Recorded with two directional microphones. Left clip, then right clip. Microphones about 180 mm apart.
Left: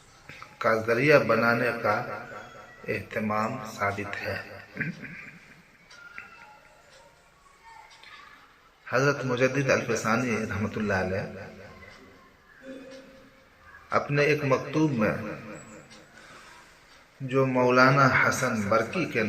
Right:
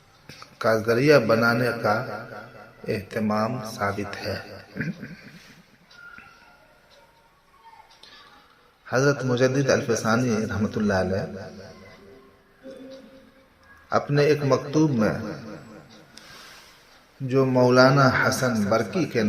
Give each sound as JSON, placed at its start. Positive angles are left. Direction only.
{"t": 0.3, "sound": "a man's voice", "side_deg": -40}
{"t": 8.9, "sound": "a man's voice", "side_deg": -40}
{"t": 13.9, "sound": "a man's voice", "side_deg": -40}
{"t": 17.2, "sound": "a man's voice", "side_deg": -40}